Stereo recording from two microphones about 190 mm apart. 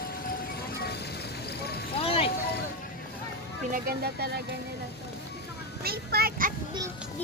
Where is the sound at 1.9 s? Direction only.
30° left (ahead or behind).